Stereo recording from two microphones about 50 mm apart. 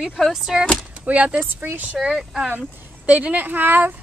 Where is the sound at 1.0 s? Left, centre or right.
Right.